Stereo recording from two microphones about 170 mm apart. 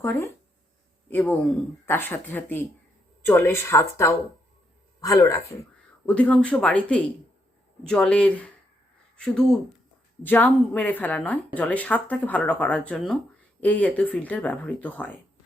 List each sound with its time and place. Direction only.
0.0 s speech: 15° left (ahead or behind)
6.1 s speech: 10° left (ahead or behind)